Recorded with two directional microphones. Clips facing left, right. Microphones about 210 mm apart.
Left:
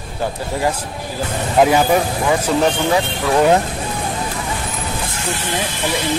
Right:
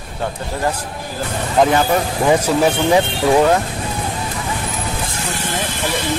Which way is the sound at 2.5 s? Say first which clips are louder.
Right 1 dB; 5° right (ahead or behind).